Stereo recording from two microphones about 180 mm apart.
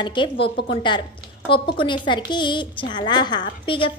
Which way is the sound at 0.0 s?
25° left (ahead or behind).